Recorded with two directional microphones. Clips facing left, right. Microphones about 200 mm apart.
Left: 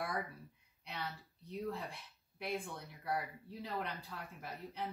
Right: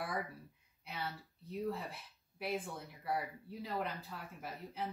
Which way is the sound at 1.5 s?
5° right (ahead or behind).